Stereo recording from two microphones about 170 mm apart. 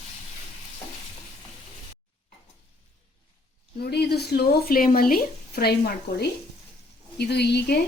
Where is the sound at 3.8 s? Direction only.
70° left (ahead or behind).